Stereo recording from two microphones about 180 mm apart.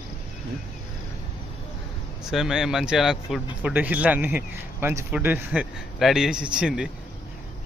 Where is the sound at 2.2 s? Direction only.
Centre (ahead or behind).